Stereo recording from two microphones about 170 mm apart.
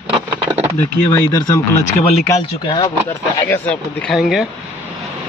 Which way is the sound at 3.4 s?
10° left (ahead or behind).